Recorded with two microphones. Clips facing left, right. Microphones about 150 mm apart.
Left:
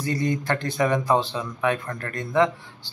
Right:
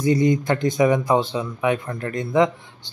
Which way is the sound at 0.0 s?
15° right (ahead or behind).